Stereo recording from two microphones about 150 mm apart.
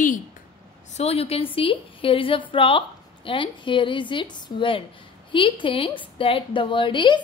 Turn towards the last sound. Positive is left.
turn(degrees=35)  # may be behind; listen again after turning